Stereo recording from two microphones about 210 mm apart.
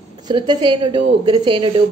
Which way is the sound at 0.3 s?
20° right (ahead or behind).